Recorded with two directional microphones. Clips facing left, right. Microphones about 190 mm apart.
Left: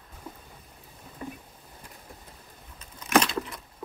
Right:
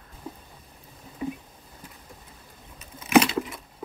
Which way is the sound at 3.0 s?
5° right (ahead or behind).